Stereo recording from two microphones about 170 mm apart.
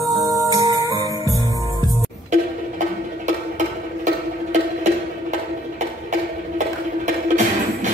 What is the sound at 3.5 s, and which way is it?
Music, 45° right (ahead or behind).